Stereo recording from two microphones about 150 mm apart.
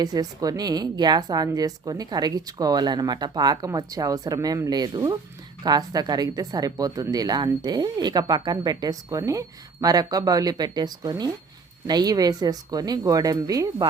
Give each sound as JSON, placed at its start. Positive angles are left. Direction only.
{"t": 0.0, "sound": "a woman's voice", "side_deg": -25}